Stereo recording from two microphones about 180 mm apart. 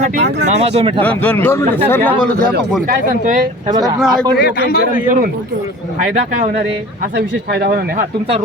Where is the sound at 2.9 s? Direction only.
45° right (ahead or behind).